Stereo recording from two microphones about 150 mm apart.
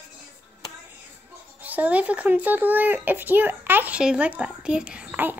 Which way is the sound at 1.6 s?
10° right (ahead or behind).